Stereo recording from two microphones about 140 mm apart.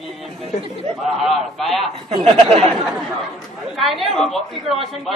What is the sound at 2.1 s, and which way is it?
Speech, 45° right (ahead or behind).